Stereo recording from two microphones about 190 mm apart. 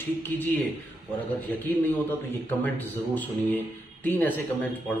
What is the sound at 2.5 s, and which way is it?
A man's voice, 10° left (ahead or behind).